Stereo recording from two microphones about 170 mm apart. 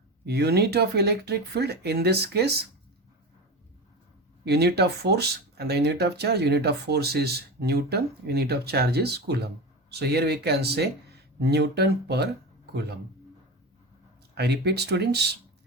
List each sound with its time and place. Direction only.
0.3 s speech: 75° right (ahead or behind)
4.4 s speech: 70° right (ahead or behind)
14.3 s speech: 75° right (ahead or behind)